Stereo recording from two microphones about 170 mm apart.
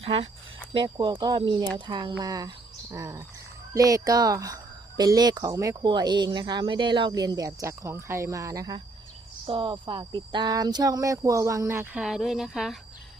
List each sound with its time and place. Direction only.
0.0 s speech: 35° right (ahead or behind); by 12.0 s 15° right (ahead or behind)
12.0 s speech: 5° right (ahead or behind)